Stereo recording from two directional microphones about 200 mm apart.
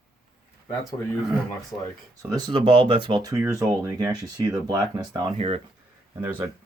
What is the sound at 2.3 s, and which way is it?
Speech, 25° right (ahead or behind).